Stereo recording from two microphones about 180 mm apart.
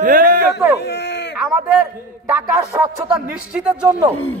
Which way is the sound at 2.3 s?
10° right (ahead or behind).